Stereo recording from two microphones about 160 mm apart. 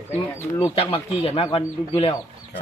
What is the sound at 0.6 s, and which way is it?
Speech, 35° left (ahead or behind).